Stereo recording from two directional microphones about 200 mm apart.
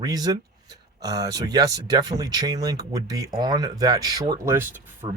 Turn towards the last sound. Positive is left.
turn(degrees=-15)  # may be behind; listen again after turning